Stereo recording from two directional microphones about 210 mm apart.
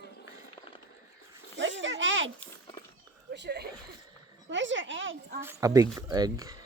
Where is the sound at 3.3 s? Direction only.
50° right (ahead or behind).